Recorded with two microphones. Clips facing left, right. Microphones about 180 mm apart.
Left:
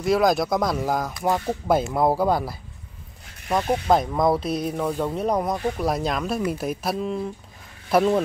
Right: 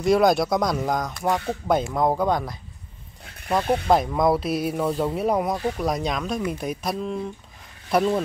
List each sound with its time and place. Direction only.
0.0 s speech: centre (ahead or behind)